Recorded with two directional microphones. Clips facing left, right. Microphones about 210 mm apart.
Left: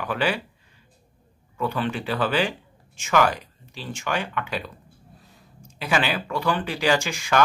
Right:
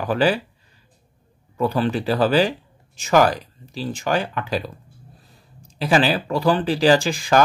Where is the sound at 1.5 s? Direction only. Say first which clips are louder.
Right 5 dB; 35° right (ahead or behind).